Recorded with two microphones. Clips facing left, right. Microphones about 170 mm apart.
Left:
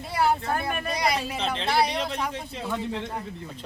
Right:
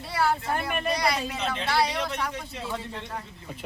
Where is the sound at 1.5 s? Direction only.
25° left (ahead or behind).